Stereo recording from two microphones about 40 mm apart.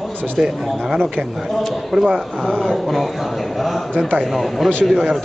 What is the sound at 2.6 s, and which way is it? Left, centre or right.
Speech, centre.